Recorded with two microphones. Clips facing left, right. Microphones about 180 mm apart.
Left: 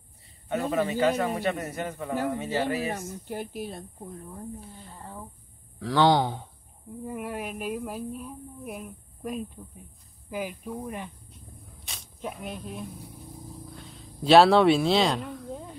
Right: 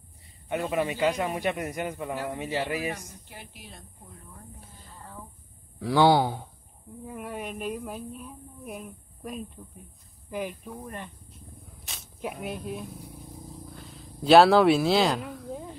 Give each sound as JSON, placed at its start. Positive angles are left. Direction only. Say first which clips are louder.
{"t": 0.7, "sound": "speech", "louder": "left 2 dB", "side_deg": -10}
{"t": 2.8, "sound": "speech", "louder": "left 2 dB", "side_deg": 40}
{"t": 5.8, "sound": "speech", "louder": "right 1 dB", "side_deg": -10}
{"t": 7.1, "sound": "a woman's voice", "louder": "left 2 dB", "side_deg": 5}